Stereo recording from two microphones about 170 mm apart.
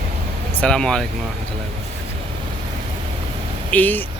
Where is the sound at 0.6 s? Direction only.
5° left (ahead or behind).